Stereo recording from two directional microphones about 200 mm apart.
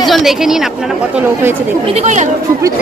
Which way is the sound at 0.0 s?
Centre (ahead or behind).